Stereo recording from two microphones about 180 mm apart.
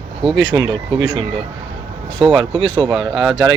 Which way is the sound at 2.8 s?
25° right (ahead or behind).